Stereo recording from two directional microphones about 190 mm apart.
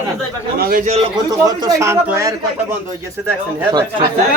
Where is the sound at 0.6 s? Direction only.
50° right (ahead or behind).